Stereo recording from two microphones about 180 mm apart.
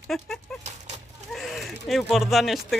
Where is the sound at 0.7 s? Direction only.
40° right (ahead or behind).